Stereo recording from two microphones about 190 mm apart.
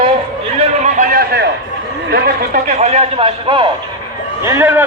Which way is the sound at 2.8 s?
35° right (ahead or behind).